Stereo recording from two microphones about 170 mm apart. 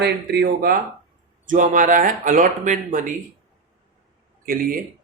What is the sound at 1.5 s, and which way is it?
A man's voice, 50° right (ahead or behind).